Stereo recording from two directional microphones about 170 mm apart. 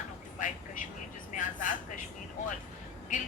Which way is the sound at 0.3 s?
50° left (ahead or behind).